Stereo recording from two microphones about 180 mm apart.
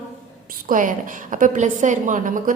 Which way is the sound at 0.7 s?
45° right (ahead or behind).